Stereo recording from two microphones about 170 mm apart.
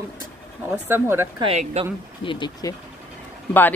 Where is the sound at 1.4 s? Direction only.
35° right (ahead or behind).